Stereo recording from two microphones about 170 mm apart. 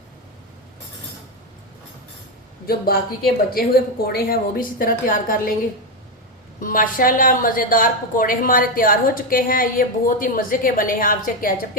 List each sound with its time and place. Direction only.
2.6 s a woman's voice: 65° left (ahead or behind)
6.6 s a woman's voice: 55° left (ahead or behind)